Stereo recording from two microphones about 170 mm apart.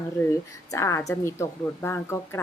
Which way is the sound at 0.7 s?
15° left (ahead or behind).